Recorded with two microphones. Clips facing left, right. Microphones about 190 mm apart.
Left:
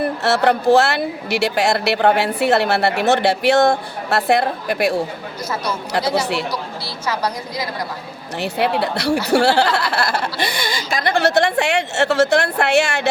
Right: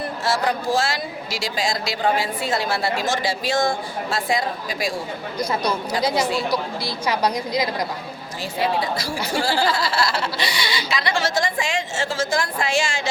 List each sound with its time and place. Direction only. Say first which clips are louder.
0.0 s a woman's voice: left 6 dB; 65° left (ahead or behind)
5.4 s a woman's voice: right 2 dB; 15° right (ahead or behind)
6.1 s a woman's voice: left 2 dB; 70° left (ahead or behind)
6.5 s a woman's voice: right 3 dB; 15° right (ahead or behind)
8.4 s a woman's voice: left 4 dB; 65° left (ahead or behind)